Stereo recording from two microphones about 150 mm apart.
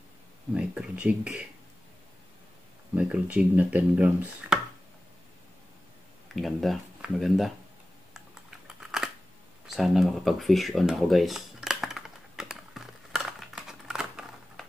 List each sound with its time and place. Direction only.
0.6 s speech: 10° right (ahead or behind)
3.0 s speech: 10° right (ahead or behind)
6.3 s speech: centre (ahead or behind)
9.7 s a sound: centre (ahead or behind)